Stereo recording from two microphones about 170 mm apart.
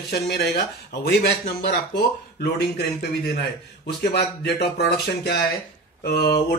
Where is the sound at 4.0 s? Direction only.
65° left (ahead or behind).